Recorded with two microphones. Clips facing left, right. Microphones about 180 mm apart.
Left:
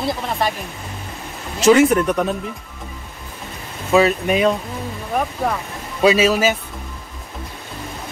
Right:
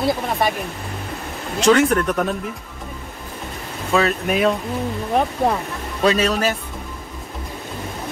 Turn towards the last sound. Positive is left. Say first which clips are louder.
# left 3 dB
turn(degrees=5)  # may be behind; listen again after turning